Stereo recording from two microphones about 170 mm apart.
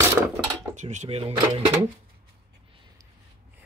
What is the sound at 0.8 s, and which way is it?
Speech, 45° right (ahead or behind).